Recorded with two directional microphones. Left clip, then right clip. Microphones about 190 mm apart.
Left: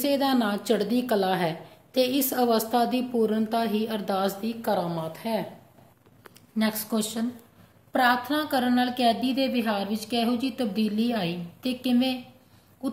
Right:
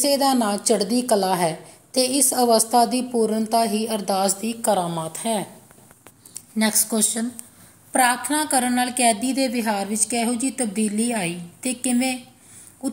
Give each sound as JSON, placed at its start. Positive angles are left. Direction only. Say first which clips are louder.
{"t": 0.0, "sound": "a woman's voice", "louder": "right 5 dB", "side_deg": -20}
{"t": 4.6, "sound": "a woman's voice", "louder": "right 6 dB", "side_deg": -30}
{"t": 6.5, "sound": "a woman's voice", "louder": "right 5 dB", "side_deg": -25}